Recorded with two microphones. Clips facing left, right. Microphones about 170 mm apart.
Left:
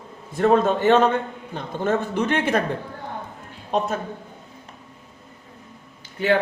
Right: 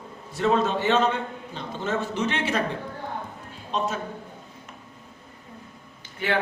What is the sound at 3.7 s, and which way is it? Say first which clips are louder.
Speech: left 4 dB; 55° left (ahead or behind).